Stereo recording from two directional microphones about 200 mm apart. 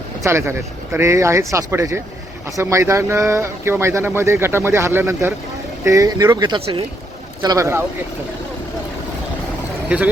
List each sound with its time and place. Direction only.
0.3 s speech: 15° right (ahead or behind)